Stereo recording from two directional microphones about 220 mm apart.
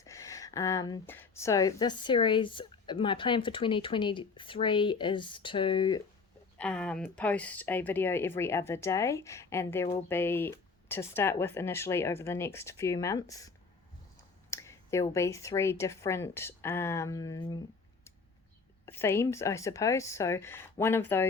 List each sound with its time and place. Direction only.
0.0 s speech: 15° left (ahead or behind)
6.6 s speech: 5° left (ahead or behind)
14.5 s speech: 10° left (ahead or behind)
18.9 s speech: 10° left (ahead or behind)